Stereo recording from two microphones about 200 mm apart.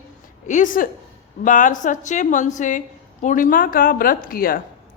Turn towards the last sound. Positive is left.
turn(degrees=45)  # may be behind; listen again after turning